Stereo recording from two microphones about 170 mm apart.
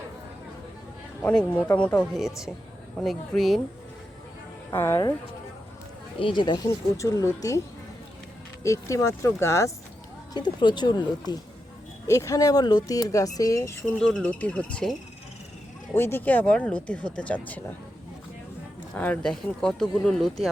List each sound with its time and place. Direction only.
1.2 s speech: 5° left (ahead or behind)
4.7 s speech: 15° left (ahead or behind)
6.1 s speech: 30° left (ahead or behind)
8.6 s speech: 20° left (ahead or behind)
10.3 s speech: 25° left (ahead or behind)
14.0 s speech: 5° left (ahead or behind)
16.0 s speech: 10° left (ahead or behind)
18.9 s speech: 10° left (ahead or behind)